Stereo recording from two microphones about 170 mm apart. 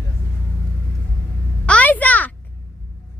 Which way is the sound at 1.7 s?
10° left (ahead or behind).